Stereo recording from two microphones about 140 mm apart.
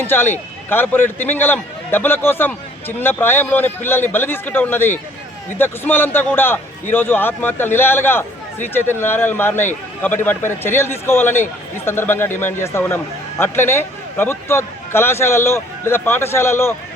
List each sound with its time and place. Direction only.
0.0 s a man's voice: 15° left (ahead or behind)